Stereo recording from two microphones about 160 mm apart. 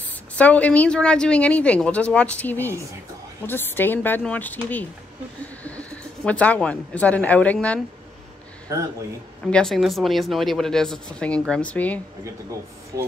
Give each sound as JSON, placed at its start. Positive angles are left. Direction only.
{"t": 0.4, "sound": "speech", "side_deg": 10}
{"t": 9.5, "sound": "speech", "side_deg": 5}
{"t": 12.9, "sound": "speech", "side_deg": -20}